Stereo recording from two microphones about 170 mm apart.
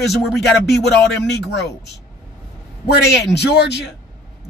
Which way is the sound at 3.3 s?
80° left.